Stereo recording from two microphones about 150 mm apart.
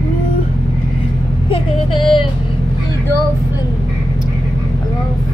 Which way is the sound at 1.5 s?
35° left (ahead or behind).